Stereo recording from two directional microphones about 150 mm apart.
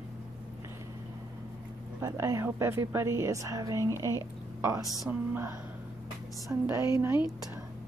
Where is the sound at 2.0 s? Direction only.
20° right (ahead or behind).